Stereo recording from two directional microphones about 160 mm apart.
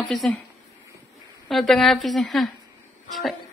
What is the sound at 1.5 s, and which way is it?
Speech, centre (ahead or behind).